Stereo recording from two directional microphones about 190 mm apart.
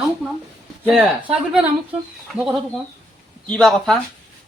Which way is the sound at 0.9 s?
5° right (ahead or behind).